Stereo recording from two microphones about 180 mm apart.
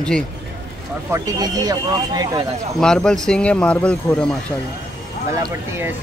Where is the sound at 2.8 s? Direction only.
5° left (ahead or behind).